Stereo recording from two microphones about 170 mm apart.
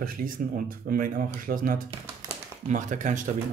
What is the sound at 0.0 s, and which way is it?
Speech, 55° right (ahead or behind).